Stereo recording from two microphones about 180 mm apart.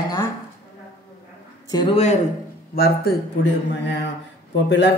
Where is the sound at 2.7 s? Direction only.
60° left (ahead or behind).